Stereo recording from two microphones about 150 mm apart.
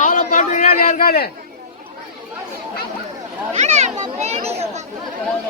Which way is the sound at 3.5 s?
50° right (ahead or behind).